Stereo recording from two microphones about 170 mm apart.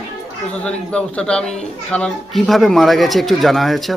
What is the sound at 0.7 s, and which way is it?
Speech, 5° left (ahead or behind).